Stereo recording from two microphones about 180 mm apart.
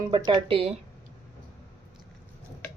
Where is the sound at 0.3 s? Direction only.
25° right (ahead or behind).